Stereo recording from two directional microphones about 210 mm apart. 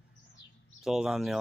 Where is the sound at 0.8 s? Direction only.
Centre (ahead or behind).